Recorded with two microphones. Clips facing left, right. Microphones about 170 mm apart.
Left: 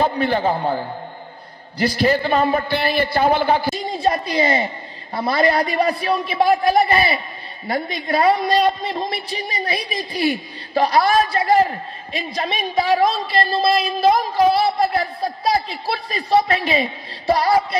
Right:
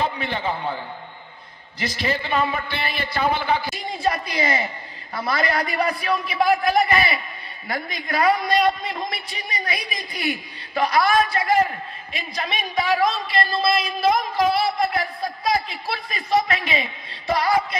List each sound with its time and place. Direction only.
0.0 s a woman's voice: 45° left (ahead or behind)